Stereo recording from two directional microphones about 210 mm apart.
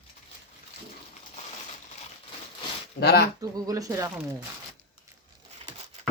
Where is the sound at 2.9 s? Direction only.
50° left (ahead or behind).